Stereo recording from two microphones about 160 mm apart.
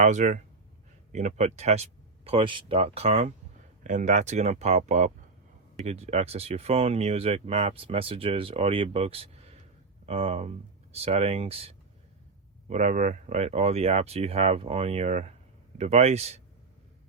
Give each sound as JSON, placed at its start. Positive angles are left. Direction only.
{"t": 0.0, "sound": "speech", "side_deg": -45}